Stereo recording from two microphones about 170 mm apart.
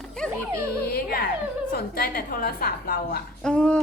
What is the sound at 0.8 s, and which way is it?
A woman's voice, 65° left (ahead or behind).